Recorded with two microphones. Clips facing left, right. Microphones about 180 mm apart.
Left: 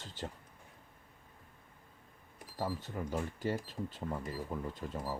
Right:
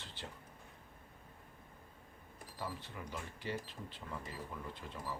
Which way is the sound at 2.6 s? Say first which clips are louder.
Left 7 dB; 45° left (ahead or behind).